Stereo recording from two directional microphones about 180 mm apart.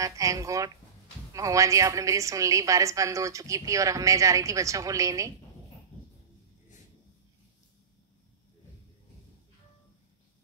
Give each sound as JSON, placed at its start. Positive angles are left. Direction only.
{"t": 0.0, "sound": "a woman's voice", "side_deg": -20}